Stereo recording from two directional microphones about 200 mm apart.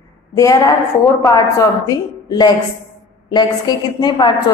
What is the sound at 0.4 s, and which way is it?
A man's voice, 15° left (ahead or behind).